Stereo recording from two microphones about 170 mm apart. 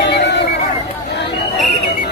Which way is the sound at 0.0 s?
85° left.